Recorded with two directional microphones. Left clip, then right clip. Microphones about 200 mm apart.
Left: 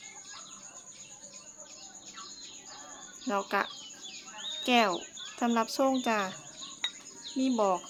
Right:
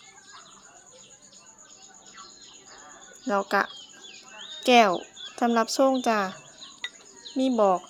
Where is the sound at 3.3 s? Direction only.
25° right (ahead or behind).